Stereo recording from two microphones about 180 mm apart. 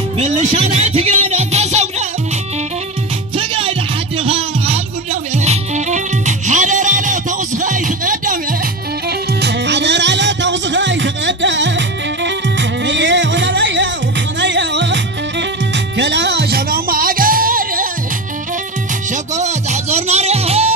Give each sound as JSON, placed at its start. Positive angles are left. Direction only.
{"t": 0.2, "sound": "speech", "side_deg": -40}
{"t": 3.3, "sound": "music", "side_deg": -30}
{"t": 9.4, "sound": "music", "side_deg": -70}
{"t": 14.4, "sound": "music", "side_deg": -80}
{"t": 16.0, "sound": "music", "side_deg": -75}
{"t": 19.3, "sound": "music", "side_deg": -40}